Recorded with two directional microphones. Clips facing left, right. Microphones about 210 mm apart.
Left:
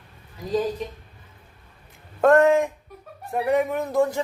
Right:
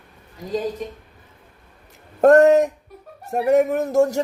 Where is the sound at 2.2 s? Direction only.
40° right (ahead or behind).